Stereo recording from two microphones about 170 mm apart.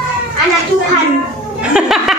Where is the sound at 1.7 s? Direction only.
Centre (ahead or behind).